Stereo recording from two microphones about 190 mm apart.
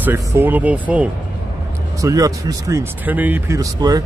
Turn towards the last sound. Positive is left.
turn(degrees=-20)  # may be behind; listen again after turning